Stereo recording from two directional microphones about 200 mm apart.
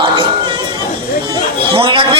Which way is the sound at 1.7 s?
25° right (ahead or behind).